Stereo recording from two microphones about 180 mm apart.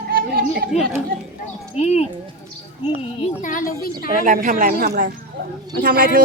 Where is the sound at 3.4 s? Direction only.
50° left (ahead or behind).